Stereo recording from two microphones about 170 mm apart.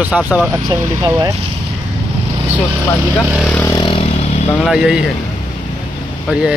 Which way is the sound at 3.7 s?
30° left (ahead or behind).